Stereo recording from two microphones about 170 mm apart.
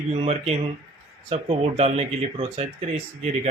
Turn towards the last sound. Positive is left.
turn(degrees=-40)  # may be behind; listen again after turning